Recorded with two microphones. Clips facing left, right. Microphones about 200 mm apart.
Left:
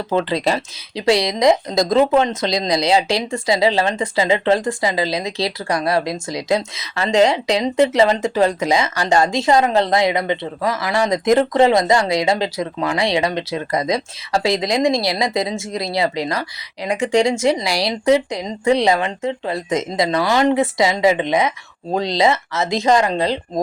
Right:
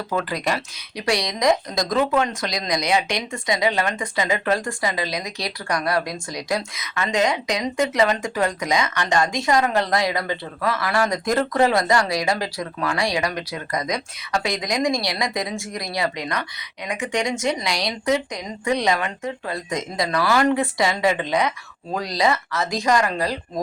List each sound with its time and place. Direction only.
0.1 s speech: 25° left (ahead or behind)